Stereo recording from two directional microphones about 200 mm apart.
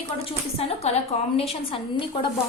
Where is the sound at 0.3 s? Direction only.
30° left (ahead or behind).